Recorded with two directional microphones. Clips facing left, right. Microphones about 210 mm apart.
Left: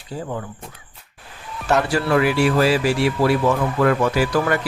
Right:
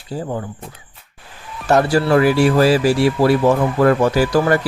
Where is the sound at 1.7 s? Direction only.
35° right (ahead or behind).